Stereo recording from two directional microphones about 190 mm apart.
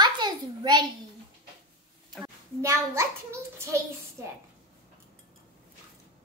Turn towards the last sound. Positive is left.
turn(degrees=-15)  # may be behind; listen again after turning